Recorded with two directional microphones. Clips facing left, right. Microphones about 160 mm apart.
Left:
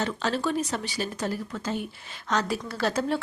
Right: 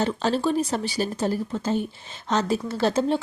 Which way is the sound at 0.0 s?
30° right (ahead or behind).